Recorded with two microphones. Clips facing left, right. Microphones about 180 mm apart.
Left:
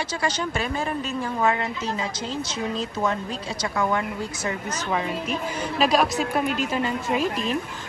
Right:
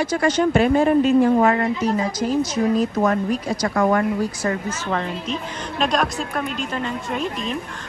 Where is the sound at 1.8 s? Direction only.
25° left (ahead or behind).